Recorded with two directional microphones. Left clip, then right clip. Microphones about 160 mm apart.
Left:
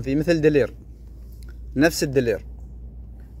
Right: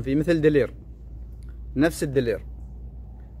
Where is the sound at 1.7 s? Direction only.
30° left (ahead or behind).